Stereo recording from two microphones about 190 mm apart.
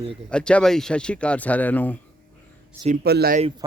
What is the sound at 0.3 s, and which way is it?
Speech, 5° left (ahead or behind).